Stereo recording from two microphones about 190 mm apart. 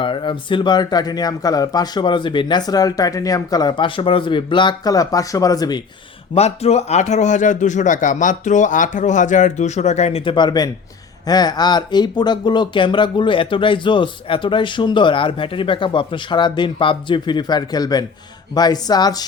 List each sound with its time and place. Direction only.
0.0 s speech: 25° left (ahead or behind)
6.3 s speech: 35° left (ahead or behind)